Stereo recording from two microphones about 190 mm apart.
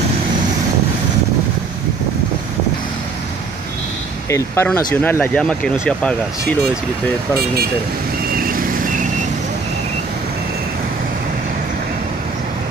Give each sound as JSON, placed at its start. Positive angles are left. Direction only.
{"t": 4.3, "sound": "speech", "side_deg": 10}
{"t": 8.4, "sound": "vehicle", "side_deg": -45}